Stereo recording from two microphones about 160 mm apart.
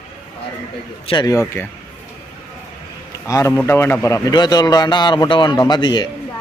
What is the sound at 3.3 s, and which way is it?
A man's voice, 20° left (ahead or behind).